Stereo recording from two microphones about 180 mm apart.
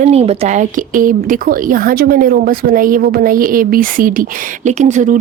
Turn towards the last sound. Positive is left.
turn(degrees=-45)  # may be behind; listen again after turning